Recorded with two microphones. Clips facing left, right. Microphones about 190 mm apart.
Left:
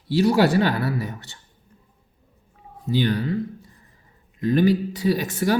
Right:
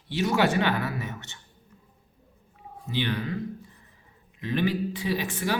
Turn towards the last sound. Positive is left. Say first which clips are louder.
# left 7 dB
turn(degrees=40)  # may be behind; listen again after turning